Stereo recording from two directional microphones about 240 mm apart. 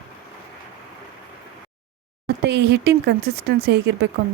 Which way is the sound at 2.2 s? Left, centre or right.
Right.